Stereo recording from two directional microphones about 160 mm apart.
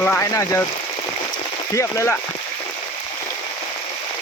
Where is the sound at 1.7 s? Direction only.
15° left (ahead or behind).